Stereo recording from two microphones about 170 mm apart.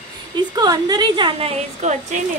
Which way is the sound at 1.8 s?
45° right (ahead or behind).